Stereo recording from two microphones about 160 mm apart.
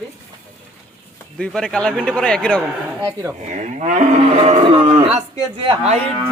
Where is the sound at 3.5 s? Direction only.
50° right (ahead or behind).